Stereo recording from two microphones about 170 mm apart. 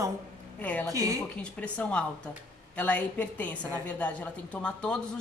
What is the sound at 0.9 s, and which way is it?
Speech, 20° right (ahead or behind).